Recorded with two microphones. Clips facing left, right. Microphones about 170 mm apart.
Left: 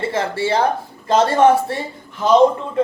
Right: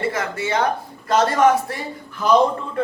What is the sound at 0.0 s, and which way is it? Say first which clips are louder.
Speech: left 3 dB; 30° left (ahead or behind).